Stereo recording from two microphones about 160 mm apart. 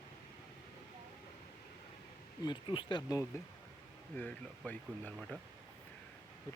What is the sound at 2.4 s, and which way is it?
Speech, 30° left (ahead or behind).